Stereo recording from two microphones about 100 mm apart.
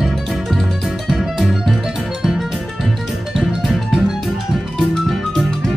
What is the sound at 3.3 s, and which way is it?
Music, centre (ahead or behind).